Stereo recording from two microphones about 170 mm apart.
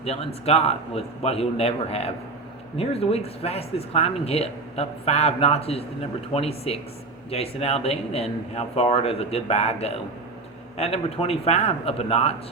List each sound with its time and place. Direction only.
0.0 s speech: 40° left (ahead or behind)